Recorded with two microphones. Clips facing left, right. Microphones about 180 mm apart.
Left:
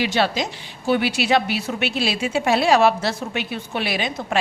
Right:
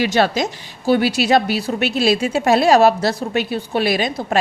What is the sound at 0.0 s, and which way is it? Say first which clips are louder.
A woman's voice: right 4 dB; 45° right (ahead or behind).